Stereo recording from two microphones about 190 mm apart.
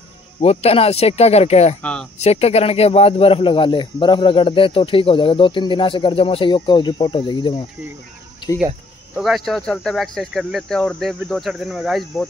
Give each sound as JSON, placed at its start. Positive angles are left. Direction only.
{"t": 0.4, "sound": "speech", "side_deg": 30}
{"t": 1.8, "sound": "speech", "side_deg": 5}
{"t": 2.2, "sound": "speech", "side_deg": 35}
{"t": 9.1, "sound": "speech", "side_deg": 0}